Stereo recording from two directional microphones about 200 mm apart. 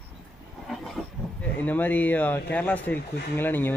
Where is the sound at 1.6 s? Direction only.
10° left (ahead or behind).